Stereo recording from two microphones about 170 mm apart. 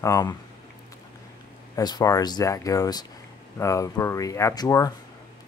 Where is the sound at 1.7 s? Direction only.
20° left (ahead or behind).